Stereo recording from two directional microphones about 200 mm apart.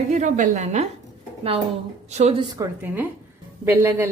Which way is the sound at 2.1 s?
35° right (ahead or behind).